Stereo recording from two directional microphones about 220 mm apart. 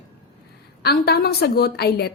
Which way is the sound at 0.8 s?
45° left (ahead or behind).